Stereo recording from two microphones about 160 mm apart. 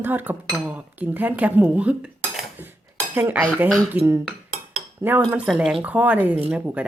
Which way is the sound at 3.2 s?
10° right (ahead or behind).